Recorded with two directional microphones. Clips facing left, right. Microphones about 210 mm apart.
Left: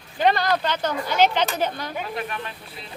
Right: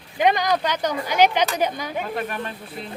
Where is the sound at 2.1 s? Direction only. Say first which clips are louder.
Right 3 dB; 45° right (ahead or behind).